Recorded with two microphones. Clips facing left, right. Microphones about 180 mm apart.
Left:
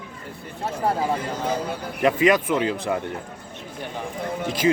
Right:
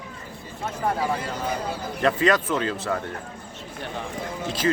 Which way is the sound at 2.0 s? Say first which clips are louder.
Left 3 dB; 10° left (ahead or behind).